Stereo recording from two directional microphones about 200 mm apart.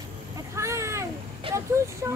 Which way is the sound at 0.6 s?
15° right (ahead or behind).